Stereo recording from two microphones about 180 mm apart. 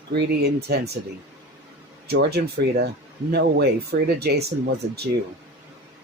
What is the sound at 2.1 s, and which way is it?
Speech, 65° right (ahead or behind).